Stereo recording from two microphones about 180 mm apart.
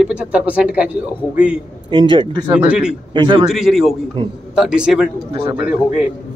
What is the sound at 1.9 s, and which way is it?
Speech, 25° right (ahead or behind).